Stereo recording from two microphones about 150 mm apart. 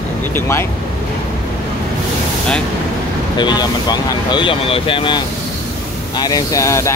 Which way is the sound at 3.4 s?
30° left (ahead or behind).